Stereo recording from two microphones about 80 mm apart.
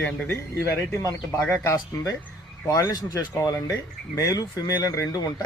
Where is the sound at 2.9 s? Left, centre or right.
Left.